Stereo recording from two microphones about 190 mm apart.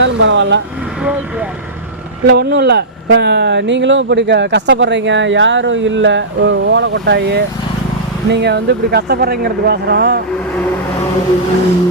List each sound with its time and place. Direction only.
0.0 s speech: 75° right (ahead or behind)
2.2 s speech: 60° right (ahead or behind)